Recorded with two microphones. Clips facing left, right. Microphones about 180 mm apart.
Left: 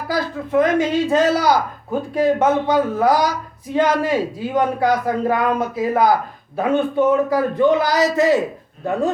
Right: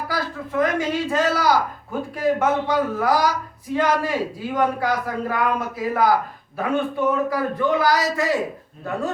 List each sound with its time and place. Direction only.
0.1 s speech: 20° left (ahead or behind)